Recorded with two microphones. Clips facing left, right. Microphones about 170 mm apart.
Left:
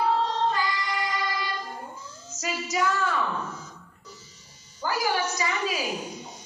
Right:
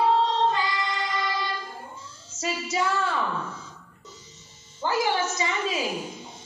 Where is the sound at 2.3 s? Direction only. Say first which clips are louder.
Right 1 dB; 30° right (ahead or behind).